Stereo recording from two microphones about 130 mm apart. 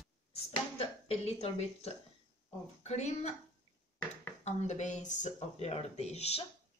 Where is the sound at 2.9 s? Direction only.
60° left (ahead or behind).